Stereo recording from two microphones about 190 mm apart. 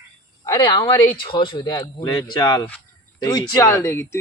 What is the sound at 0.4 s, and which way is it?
Speech, 20° left (ahead or behind).